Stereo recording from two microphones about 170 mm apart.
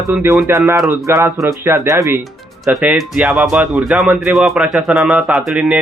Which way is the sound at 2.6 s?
5° right (ahead or behind).